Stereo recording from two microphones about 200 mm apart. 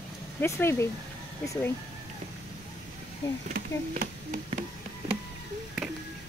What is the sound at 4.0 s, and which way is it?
Speech, 45° right (ahead or behind).